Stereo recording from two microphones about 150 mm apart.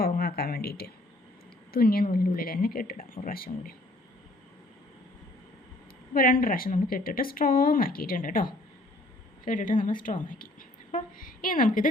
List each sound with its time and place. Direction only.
0.0 s a sound: 90° left
1.7 s speech: 90° left
6.1 s a woman's voice: 70° left (ahead or behind)